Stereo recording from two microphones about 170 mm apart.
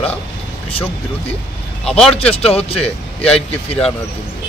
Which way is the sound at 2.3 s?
35° left (ahead or behind).